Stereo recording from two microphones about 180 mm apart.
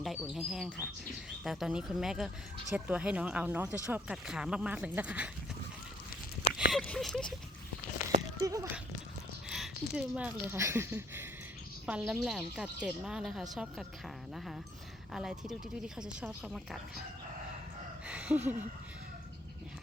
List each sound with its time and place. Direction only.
0.0 s speech: centre (ahead or behind)
6.7 s speech: 5° left (ahead or behind)
8.4 s speech: 20° right (ahead or behind)
9.5 s speech: 5° right (ahead or behind)
15.1 s speech: 5° right (ahead or behind)
18.0 s a sound: 5° right (ahead or behind)